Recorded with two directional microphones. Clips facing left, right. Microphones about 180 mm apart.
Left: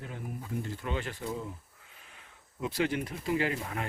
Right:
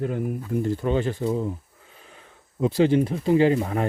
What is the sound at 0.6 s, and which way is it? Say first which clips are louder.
Speech: right 13 dB; 35° right (ahead or behind).